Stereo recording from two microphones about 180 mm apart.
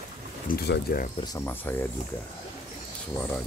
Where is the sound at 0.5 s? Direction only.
65° left (ahead or behind).